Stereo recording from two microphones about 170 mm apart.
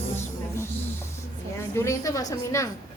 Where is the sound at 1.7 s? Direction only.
15° left (ahead or behind).